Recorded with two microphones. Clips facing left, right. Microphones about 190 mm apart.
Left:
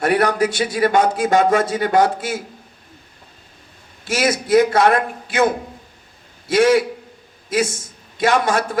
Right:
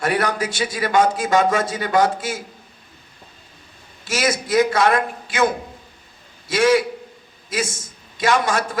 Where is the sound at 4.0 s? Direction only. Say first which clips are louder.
Left 2 dB; 55° left (ahead or behind).